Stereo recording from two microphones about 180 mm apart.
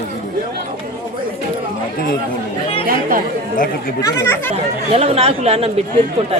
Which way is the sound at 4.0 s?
15° left (ahead or behind).